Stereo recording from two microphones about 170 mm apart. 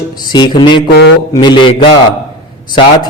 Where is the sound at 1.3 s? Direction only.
25° left (ahead or behind).